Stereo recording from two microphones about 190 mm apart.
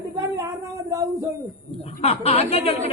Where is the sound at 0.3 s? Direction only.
15° right (ahead or behind).